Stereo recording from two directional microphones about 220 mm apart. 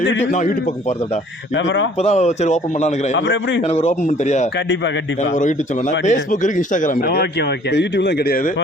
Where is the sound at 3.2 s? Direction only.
55° left (ahead or behind).